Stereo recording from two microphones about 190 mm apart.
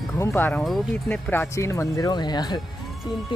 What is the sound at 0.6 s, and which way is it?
Speech, centre (ahead or behind).